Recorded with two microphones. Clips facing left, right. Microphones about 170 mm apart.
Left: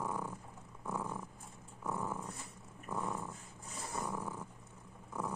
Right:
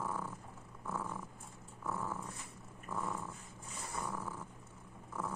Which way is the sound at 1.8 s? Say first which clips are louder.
Left 1 dB; 15° left (ahead or behind).